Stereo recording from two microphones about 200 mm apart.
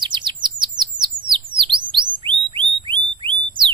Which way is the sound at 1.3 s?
25° right (ahead or behind).